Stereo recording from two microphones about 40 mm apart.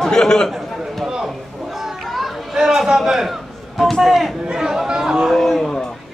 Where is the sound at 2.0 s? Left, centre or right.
Centre.